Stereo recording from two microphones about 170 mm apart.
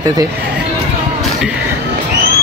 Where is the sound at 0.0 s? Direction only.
20° right (ahead or behind).